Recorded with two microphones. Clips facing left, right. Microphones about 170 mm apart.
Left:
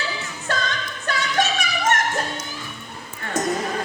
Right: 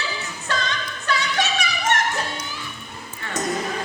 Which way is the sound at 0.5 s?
50° left (ahead or behind).